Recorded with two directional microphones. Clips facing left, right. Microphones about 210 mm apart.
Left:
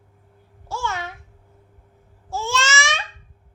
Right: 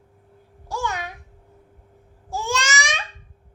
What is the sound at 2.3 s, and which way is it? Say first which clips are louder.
Babbling: left 1 dB; 15° right (ahead or behind).